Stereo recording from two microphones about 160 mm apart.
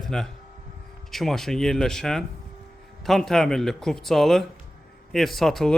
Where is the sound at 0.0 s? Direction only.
5° left (ahead or behind).